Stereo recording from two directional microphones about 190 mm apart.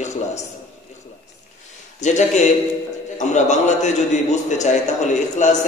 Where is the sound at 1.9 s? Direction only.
40° left (ahead or behind).